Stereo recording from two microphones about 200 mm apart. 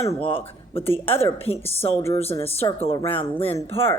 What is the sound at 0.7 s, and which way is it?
A woman's voice, 30° left (ahead or behind).